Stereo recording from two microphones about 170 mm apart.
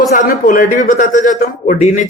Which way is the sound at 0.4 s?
50° left (ahead or behind).